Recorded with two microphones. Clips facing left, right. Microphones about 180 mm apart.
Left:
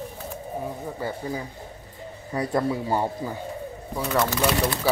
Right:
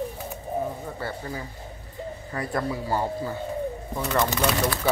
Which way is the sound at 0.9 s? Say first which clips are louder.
Left 3 dB; 15° left (ahead or behind).